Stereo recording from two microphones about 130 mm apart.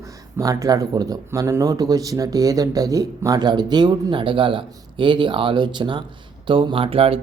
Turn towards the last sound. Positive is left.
turn(degrees=-45)  # may be behind; listen again after turning